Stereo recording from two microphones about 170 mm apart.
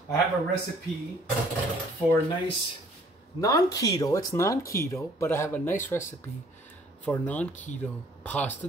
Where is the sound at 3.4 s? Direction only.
20° left (ahead or behind).